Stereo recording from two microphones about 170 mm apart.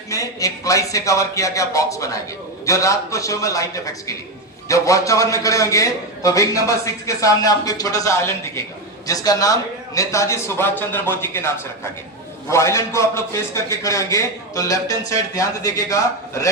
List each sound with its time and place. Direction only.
0.1 s a man's voice: 20° left (ahead or behind)